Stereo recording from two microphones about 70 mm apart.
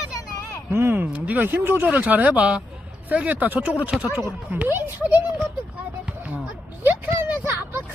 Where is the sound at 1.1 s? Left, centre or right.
Right.